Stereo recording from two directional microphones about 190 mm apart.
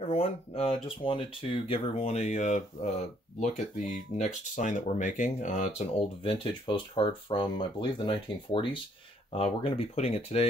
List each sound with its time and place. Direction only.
0.1 s speech: 30° left (ahead or behind)